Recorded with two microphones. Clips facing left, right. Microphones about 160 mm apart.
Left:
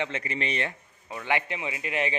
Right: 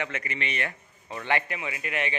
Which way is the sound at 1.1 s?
10° left (ahead or behind).